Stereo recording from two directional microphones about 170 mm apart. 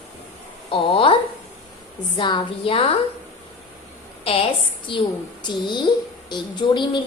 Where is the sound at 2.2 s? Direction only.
25° left (ahead or behind).